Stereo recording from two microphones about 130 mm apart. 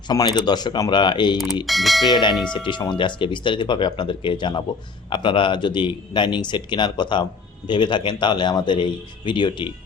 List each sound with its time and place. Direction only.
0.1 s speech: 30° left (ahead or behind)
1.6 s speech: centre (ahead or behind)
2.6 s speech: 35° left (ahead or behind)